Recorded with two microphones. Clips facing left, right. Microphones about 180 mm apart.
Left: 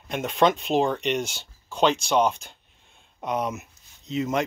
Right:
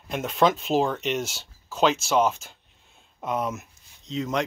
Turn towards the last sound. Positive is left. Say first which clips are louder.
# left 2 dB
turn(degrees=5)  # may be behind; listen again after turning